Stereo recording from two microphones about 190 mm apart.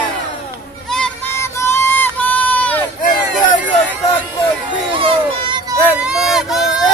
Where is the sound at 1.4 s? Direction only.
15° left (ahead or behind).